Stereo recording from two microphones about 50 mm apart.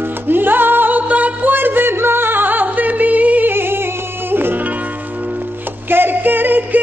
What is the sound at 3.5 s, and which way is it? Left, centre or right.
Music, right.